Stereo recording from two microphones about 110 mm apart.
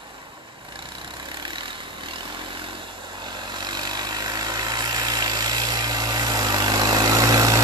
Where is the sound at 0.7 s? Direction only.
45° right (ahead or behind).